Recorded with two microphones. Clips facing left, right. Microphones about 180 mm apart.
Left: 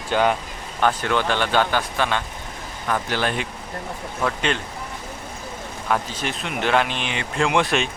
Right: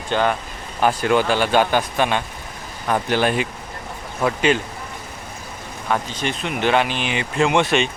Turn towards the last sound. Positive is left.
turn(degrees=0)  # may be behind; listen again after turning